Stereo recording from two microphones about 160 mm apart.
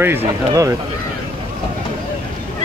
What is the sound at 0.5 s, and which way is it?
Speech, 20° right (ahead or behind).